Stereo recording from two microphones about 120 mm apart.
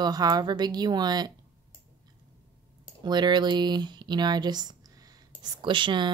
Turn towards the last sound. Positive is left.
turn(degrees=-40)  # may be behind; listen again after turning